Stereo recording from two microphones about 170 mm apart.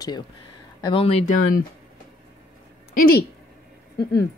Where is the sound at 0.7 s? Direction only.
25° left (ahead or behind).